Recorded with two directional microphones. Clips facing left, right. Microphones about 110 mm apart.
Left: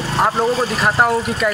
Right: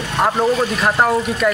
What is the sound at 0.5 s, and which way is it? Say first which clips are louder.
Speech: right 1 dB; 35° left (ahead or behind).